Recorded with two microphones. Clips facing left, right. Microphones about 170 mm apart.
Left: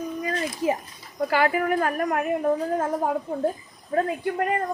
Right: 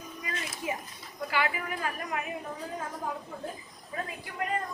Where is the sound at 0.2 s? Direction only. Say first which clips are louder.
Left 8 dB; 45° left (ahead or behind).